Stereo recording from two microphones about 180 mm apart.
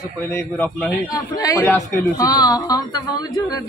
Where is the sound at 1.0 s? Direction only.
20° left (ahead or behind).